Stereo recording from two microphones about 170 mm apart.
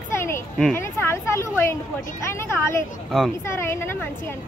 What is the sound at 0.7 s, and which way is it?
Speech, 15° left (ahead or behind).